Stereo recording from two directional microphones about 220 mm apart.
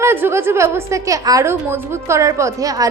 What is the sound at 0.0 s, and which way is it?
A woman's voice, 10° right (ahead or behind).